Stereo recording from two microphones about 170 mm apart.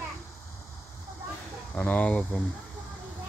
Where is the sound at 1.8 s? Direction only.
10° left (ahead or behind).